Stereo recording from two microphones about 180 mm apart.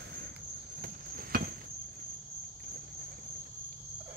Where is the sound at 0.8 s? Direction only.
55° right (ahead or behind).